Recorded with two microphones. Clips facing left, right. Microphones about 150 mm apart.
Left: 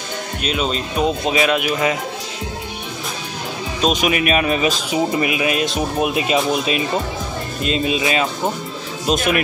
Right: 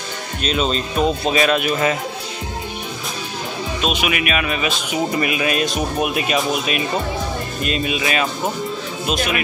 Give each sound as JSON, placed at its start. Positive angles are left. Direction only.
{"t": 0.4, "sound": "speech", "side_deg": 10}
{"t": 3.8, "sound": "speech", "side_deg": 40}
{"t": 5.2, "sound": "speech", "side_deg": 20}
{"t": 9.0, "sound": "speech", "side_deg": 50}